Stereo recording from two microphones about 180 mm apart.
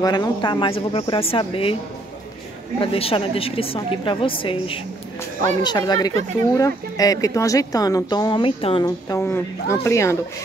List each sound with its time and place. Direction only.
0.0 s a woman's voice: 20° left (ahead or behind)
2.8 s a woman's voice: 30° left (ahead or behind); by 10.1 s 15° left (ahead or behind)